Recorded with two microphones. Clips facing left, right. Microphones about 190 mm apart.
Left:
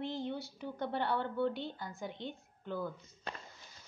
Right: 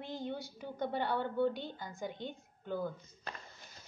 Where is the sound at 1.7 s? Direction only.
20° right (ahead or behind).